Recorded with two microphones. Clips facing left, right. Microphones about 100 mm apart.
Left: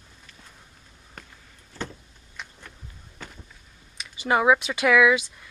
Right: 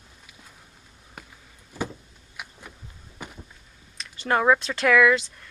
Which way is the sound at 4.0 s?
5° left (ahead or behind).